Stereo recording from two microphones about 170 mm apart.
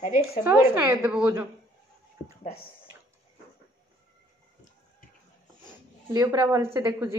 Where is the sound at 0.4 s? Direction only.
15° right (ahead or behind).